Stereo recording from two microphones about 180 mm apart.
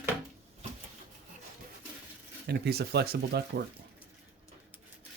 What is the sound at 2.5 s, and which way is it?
Speech, 65° right (ahead or behind).